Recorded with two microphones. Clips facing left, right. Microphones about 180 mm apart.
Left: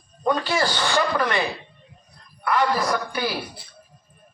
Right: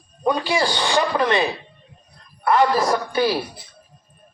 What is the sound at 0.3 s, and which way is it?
Speech, 15° right (ahead or behind).